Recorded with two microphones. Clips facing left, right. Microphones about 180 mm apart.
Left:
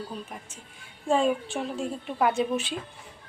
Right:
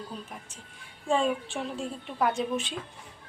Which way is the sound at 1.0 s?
5° left (ahead or behind).